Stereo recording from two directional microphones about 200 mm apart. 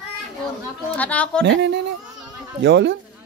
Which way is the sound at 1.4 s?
65° right (ahead or behind).